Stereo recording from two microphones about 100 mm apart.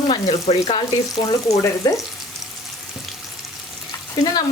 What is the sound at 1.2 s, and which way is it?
Speech, 35° left (ahead or behind).